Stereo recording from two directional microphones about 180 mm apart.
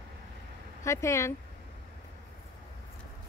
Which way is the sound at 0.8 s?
15° left (ahead or behind).